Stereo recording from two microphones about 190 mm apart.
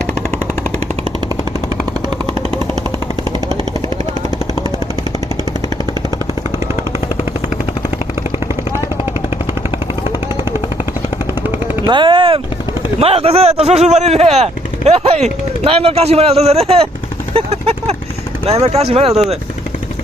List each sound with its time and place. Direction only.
11.9 s vehicle: 25° right (ahead or behind)
13.0 s speech: 30° right (ahead or behind)